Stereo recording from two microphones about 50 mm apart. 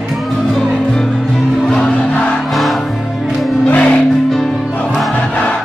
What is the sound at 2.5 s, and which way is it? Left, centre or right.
Music, centre.